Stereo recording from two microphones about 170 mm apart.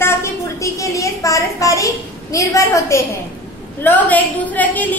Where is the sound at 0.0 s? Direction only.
15° left (ahead or behind).